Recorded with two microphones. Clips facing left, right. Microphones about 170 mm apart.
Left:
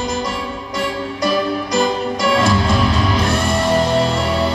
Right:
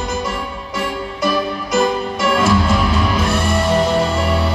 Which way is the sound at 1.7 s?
5° right (ahead or behind).